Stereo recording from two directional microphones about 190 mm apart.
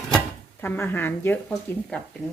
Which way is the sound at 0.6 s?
10° left (ahead or behind).